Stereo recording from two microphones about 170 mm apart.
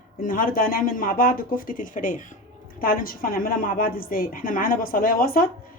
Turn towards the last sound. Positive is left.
turn(degrees=60)  # may be behind; listen again after turning